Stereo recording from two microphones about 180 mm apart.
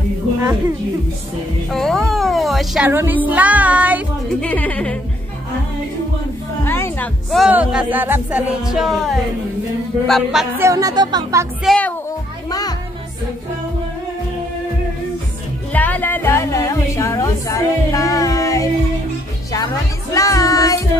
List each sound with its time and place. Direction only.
1.7 s a woman's voice: centre (ahead or behind)
3.3 s music: 10° right (ahead or behind)
4.4 s a woman's voice: 10° left (ahead or behind)
6.6 s a woman's voice: 10° left (ahead or behind)
7.2 s music: centre (ahead or behind)
10.6 s speech: 20° right (ahead or behind)
11.6 s music: 5° left (ahead or behind)
12.4 s music: 20° left (ahead or behind)
15.7 s music: 10° left (ahead or behind)
20.2 s child singing: 15° left (ahead or behind)